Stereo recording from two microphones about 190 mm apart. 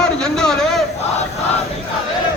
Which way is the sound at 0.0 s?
5° left (ahead or behind).